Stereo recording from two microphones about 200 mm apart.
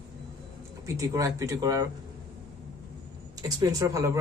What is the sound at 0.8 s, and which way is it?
Speech, 15° right (ahead or behind).